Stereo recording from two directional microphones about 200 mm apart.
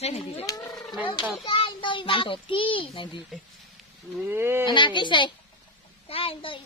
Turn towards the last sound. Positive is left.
turn(degrees=25)  # may be behind; listen again after turning